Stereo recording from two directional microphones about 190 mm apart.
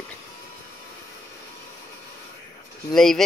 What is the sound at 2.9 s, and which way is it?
Speech, centre (ahead or behind).